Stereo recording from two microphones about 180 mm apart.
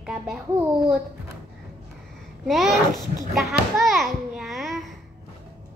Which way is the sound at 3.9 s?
Centre (ahead or behind).